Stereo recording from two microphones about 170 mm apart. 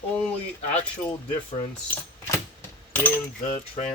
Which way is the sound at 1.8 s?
15° left (ahead or behind).